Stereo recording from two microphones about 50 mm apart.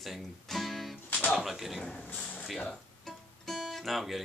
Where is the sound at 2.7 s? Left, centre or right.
Centre.